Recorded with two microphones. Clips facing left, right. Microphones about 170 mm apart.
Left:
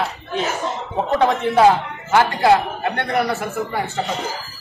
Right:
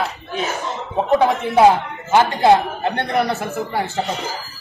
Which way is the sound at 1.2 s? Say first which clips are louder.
Left 1 dB; 10° right (ahead or behind).